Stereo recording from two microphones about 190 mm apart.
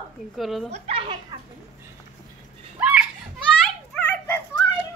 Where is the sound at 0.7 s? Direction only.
35° right (ahead or behind).